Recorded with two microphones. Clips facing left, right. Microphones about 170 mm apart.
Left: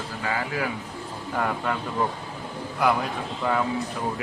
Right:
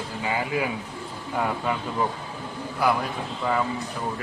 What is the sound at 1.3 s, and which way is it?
Speech, 5° right (ahead or behind).